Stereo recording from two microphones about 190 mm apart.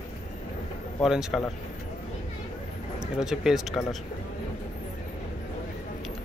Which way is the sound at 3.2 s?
5° right (ahead or behind).